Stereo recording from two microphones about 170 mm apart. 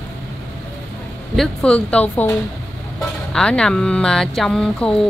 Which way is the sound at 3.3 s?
5° left (ahead or behind).